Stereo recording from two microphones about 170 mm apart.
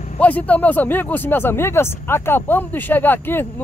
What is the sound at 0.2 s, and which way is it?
Speech, 10° left (ahead or behind).